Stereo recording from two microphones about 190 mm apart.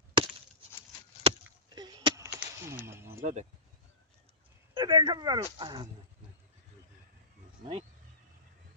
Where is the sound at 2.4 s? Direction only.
10° right (ahead or behind).